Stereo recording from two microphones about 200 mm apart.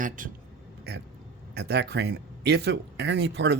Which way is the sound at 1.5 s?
55° right (ahead or behind).